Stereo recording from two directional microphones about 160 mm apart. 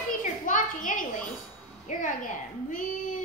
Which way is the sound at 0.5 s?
55° left (ahead or behind).